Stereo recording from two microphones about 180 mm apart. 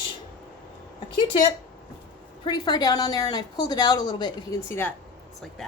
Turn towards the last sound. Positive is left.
turn(degrees=10)  # may be behind; listen again after turning